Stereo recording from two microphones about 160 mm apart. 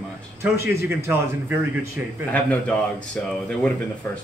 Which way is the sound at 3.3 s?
5° left (ahead or behind).